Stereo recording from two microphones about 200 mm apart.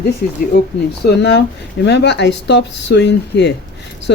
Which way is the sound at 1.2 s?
60° left (ahead or behind).